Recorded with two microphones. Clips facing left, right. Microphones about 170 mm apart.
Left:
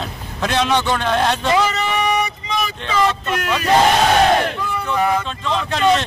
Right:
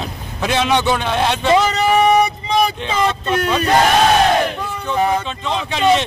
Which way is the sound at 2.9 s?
30° right (ahead or behind).